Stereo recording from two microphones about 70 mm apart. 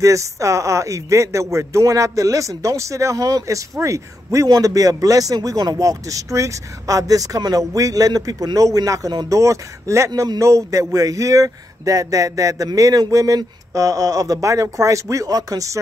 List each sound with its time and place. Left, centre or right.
0.0 s speech: right
4.5 s speech: right